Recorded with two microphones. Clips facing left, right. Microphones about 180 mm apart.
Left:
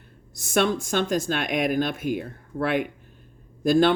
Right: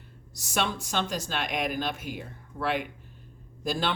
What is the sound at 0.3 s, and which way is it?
Speech, 50° left (ahead or behind).